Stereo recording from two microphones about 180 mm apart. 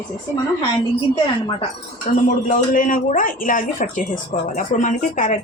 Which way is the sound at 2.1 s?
40° left (ahead or behind).